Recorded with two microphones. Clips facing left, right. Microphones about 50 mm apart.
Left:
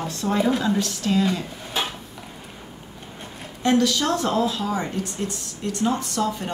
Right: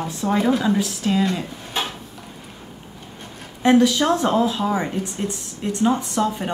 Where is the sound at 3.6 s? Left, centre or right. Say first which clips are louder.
Right 4 dB; centre.